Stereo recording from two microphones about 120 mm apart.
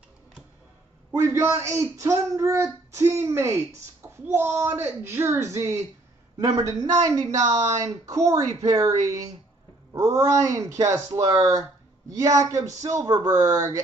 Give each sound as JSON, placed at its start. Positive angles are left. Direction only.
{"t": 1.1, "sound": "speech", "side_deg": -25}
{"t": 9.9, "sound": "speech", "side_deg": -30}